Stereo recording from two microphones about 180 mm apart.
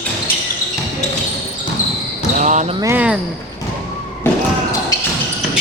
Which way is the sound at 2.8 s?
10° right (ahead or behind).